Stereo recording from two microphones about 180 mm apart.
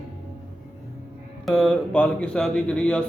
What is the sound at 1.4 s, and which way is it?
A man's voice, 5° left (ahead or behind).